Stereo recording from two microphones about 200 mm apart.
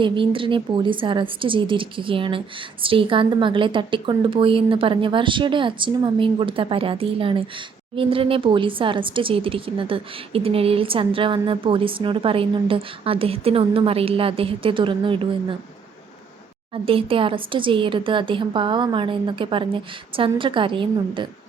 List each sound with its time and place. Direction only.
0.0 s a woman's voice: 25° right (ahead or behind)
16.7 s a woman's voice: 25° right (ahead or behind)